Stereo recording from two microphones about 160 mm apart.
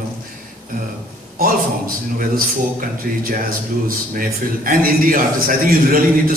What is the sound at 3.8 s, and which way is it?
A man's voice, 60° right (ahead or behind).